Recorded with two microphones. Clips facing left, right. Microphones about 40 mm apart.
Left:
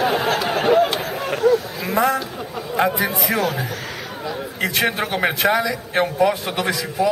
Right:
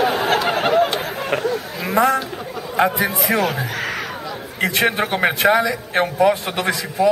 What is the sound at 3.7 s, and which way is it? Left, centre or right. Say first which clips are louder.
Speech: right 5 dB; right.